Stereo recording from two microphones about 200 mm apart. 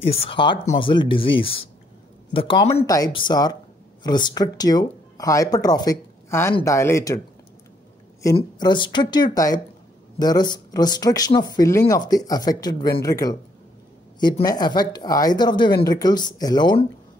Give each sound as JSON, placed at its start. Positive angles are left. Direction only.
{"t": 0.1, "sound": "speech", "side_deg": 25}
{"t": 8.4, "sound": "speech", "side_deg": 25}